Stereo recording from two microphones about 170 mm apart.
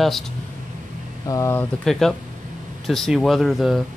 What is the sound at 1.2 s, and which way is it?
Speech, 20° left (ahead or behind).